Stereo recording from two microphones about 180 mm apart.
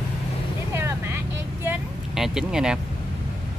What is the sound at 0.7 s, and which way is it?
Vehicle, 15° right (ahead or behind).